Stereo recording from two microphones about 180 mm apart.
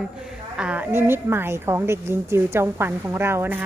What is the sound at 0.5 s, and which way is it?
A woman's voice, 5° right (ahead or behind).